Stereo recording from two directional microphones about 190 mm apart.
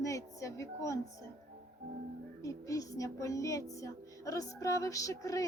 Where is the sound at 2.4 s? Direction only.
15° left (ahead or behind).